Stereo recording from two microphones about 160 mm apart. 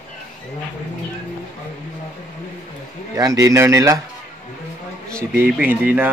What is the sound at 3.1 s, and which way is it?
Speech, 20° right (ahead or behind).